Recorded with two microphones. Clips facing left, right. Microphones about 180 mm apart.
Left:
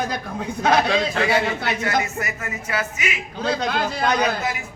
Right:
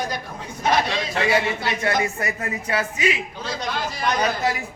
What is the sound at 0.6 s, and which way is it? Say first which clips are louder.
Speech: left 2 dB; 60° left (ahead or behind).